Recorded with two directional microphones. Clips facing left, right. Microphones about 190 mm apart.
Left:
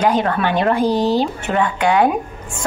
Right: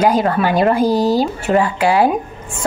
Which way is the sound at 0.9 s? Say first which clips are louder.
Right 2 dB; 40° right (ahead or behind).